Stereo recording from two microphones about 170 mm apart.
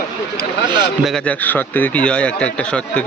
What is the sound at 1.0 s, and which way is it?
Speech, 5° left (ahead or behind).